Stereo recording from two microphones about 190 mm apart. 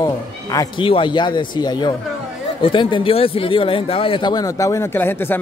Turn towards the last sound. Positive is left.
turn(degrees=10)  # may be behind; listen again after turning